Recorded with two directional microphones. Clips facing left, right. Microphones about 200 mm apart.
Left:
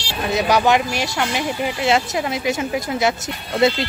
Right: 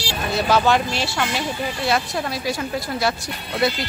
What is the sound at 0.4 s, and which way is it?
Speech, 15° left (ahead or behind).